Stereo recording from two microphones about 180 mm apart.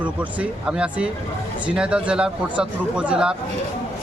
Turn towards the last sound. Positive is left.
turn(degrees=-5)  # may be behind; listen again after turning